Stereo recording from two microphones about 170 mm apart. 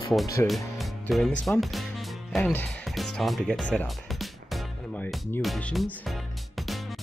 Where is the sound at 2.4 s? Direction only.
10° left (ahead or behind).